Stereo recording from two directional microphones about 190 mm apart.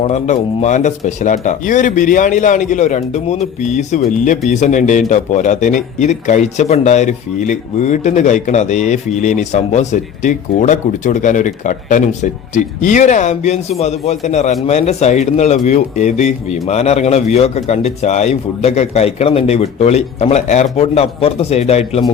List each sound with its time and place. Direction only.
0.0 s a man's voice: 35° left (ahead or behind)